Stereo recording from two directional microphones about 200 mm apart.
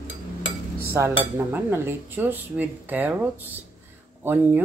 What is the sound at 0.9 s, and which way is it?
Speech, 10° right (ahead or behind).